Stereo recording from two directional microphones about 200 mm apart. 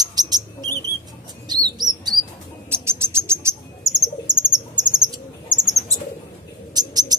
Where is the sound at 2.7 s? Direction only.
10° right (ahead or behind).